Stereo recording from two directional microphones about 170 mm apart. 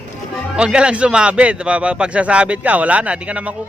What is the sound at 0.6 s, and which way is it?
A man's voice, 5° right (ahead or behind).